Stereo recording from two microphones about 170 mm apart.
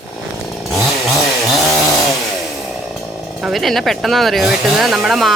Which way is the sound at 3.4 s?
Centre (ahead or behind).